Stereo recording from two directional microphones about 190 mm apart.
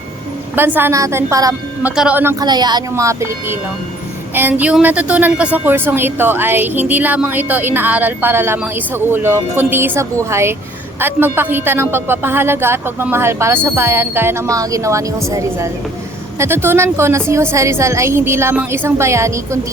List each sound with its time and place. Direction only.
0.5 s a woman's voice: 10° right (ahead or behind)
2.4 s a woman's voice: 20° right (ahead or behind)